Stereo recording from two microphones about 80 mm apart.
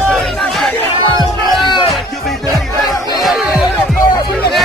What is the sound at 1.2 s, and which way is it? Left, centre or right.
Music, left.